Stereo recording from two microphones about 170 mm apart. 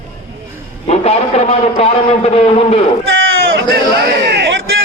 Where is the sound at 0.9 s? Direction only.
35° left (ahead or behind).